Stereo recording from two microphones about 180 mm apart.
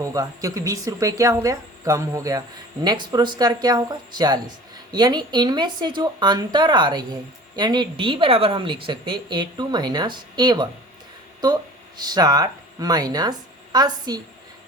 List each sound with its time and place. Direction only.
0.0 s speech: 20° right (ahead or behind)
11.9 s speech: 20° right (ahead or behind)